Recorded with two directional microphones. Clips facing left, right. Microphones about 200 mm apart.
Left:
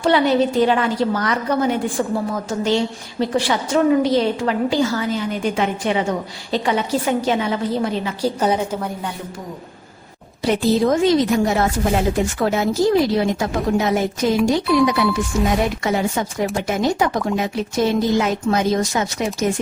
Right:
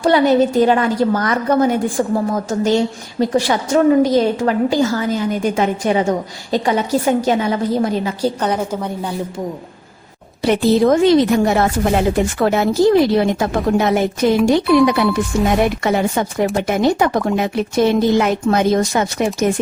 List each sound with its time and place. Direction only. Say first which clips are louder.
0.0 s a woman's voice: right 3 dB; 45° right (ahead or behind)
8.4 s a woman's voice: even; 5° left (ahead or behind)
10.4 s speech: right 4 dB; 65° right (ahead or behind)